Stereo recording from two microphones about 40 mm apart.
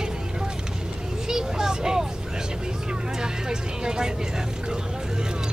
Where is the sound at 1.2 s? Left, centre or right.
Centre.